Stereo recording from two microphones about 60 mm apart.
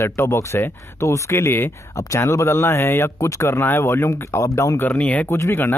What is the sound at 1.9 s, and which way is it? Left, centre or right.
Speech, left.